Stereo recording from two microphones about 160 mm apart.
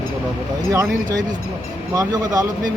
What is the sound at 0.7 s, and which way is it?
Speech, 20° right (ahead or behind).